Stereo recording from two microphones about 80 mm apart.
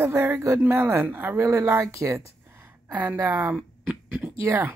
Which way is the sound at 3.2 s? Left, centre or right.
Right.